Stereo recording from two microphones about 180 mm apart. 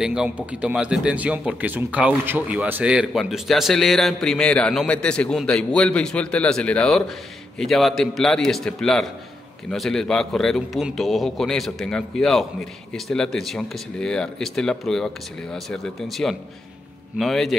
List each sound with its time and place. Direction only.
0.0 s speech: 5° right (ahead or behind)